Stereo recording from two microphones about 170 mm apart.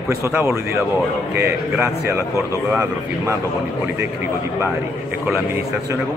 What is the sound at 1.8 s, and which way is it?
Speech, 15° right (ahead or behind).